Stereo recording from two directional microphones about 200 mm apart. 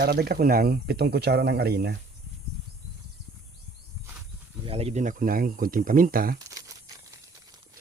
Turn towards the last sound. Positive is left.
turn(degrees=-15)  # may be behind; listen again after turning